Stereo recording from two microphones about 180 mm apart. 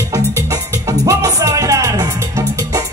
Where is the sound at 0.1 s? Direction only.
20° right (ahead or behind).